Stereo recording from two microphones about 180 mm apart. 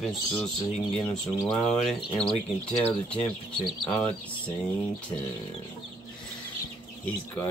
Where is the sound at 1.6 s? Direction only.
5° left (ahead or behind).